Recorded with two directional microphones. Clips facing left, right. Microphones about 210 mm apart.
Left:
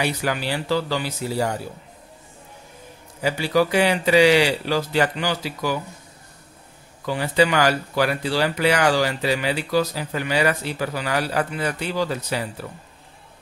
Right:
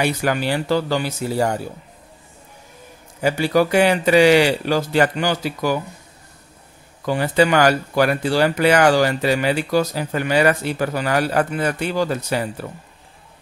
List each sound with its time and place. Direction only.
0.0 s speech: 50° right (ahead or behind)
3.2 s speech: 50° right (ahead or behind)
7.1 s speech: 50° right (ahead or behind)